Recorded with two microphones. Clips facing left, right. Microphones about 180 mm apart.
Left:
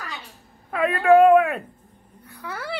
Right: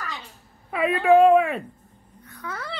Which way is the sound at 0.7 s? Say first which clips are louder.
Left 1 dB; centre (ahead or behind).